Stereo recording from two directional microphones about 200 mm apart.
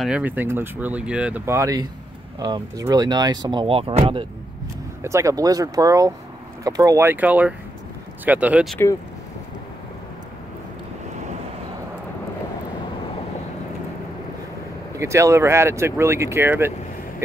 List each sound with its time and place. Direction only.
0.0 s speech: 5° right (ahead or behind); by 4.2 s 25° right (ahead or behind)
5.0 s speech: 15° right (ahead or behind)
15.0 s speech: 15° right (ahead or behind)